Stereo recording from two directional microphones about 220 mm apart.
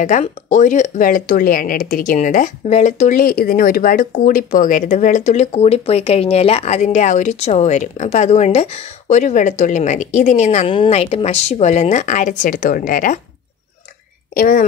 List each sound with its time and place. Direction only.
0.0 s speech: 35° left (ahead or behind)
14.3 s speech: 40° left (ahead or behind)